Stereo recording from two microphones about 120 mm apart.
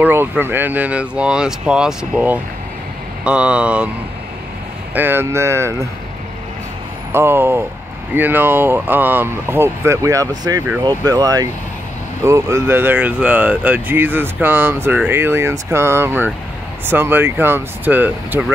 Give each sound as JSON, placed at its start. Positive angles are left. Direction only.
{"t": 0.0, "sound": "speech", "side_deg": -20}
{"t": 4.9, "sound": "speech", "side_deg": -20}
{"t": 7.1, "sound": "speech", "side_deg": -20}